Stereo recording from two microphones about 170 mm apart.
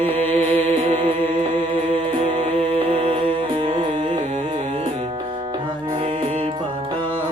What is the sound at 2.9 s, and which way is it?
Music, 30° right (ahead or behind).